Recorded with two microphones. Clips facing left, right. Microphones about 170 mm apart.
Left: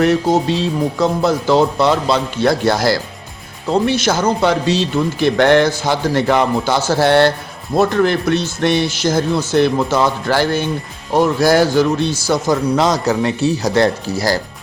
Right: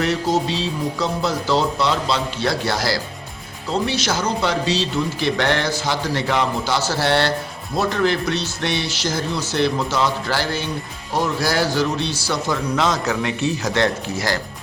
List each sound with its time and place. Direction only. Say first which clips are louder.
0.0 s a man's voice: left 6 dB; 50° left (ahead or behind); by 14.4 s 35° left (ahead or behind)